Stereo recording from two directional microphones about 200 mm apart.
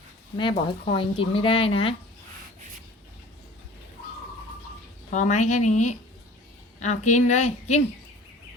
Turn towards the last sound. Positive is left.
turn(degrees=35)  # may be behind; listen again after turning